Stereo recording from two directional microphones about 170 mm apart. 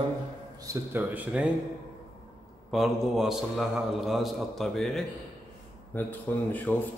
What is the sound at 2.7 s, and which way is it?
A man's voice, centre (ahead or behind).